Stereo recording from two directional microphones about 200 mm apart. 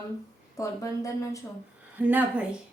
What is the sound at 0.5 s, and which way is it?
Speech, 15° left (ahead or behind).